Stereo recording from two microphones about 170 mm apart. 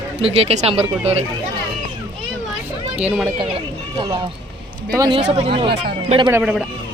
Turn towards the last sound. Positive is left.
turn(degrees=-5)  # may be behind; listen again after turning